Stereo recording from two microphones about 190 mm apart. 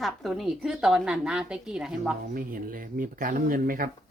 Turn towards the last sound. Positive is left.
turn(degrees=-45)  # may be behind; listen again after turning